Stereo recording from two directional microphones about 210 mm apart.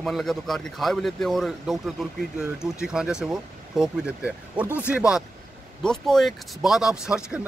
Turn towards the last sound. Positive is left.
turn(degrees=-5)  # may be behind; listen again after turning